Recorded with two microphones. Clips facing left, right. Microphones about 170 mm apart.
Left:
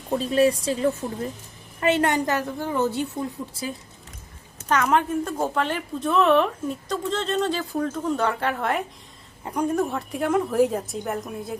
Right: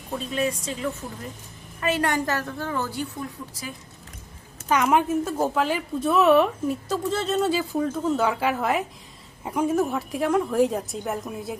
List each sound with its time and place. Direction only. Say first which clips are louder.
0.1 s a woman's voice: left 7 dB; 35° left (ahead or behind)
1.8 s a woman's voice: left 3 dB; 25° left (ahead or behind)
4.7 s a woman's voice: right 1 dB; 10° right (ahead or behind)